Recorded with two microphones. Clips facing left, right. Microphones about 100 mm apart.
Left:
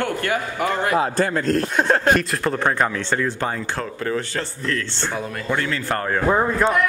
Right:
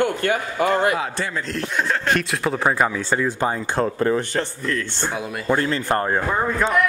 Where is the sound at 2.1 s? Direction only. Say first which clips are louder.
Left 1 dB; centre (ahead or behind).